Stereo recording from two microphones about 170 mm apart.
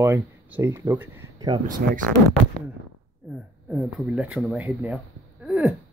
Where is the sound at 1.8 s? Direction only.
70° right (ahead or behind).